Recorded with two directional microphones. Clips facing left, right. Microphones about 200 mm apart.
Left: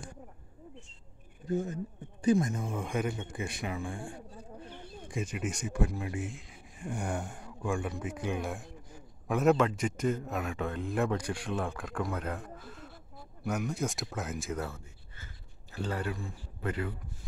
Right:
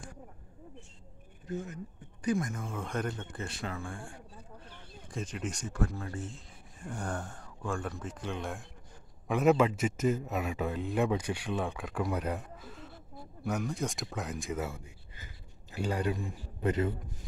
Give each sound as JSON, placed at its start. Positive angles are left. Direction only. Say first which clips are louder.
{"t": 1.5, "sound": "speech", "louder": "left 6 dB", "side_deg": 30}
{"t": 5.1, "sound": "speech", "louder": "left 2 dB", "side_deg": 10}
{"t": 14.7, "sound": "a man's voice", "louder": "right 2 dB", "side_deg": -15}